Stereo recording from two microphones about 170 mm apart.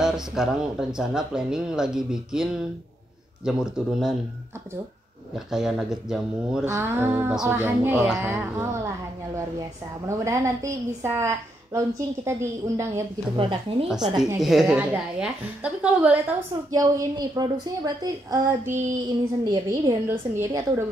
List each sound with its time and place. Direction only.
0.0 s speech: 5° right (ahead or behind)
5.3 s speech: centre (ahead or behind)
6.6 s a woman's voice: 15° right (ahead or behind)
10.0 s a woman's voice: 15° right (ahead or behind)
13.4 s a woman's voice: 30° right (ahead or behind)
14.4 s a woman's voice: centre (ahead or behind); by 20.6 s 20° right (ahead or behind)